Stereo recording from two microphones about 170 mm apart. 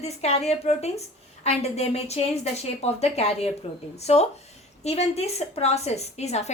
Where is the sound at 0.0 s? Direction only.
40° left (ahead or behind).